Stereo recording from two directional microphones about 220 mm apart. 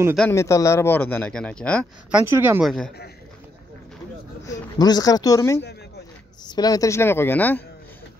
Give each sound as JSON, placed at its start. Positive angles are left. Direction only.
{"t": 0.3, "sound": "speech", "side_deg": 15}
{"t": 2.0, "sound": "speech", "side_deg": -10}
{"t": 4.7, "sound": "speech", "side_deg": 20}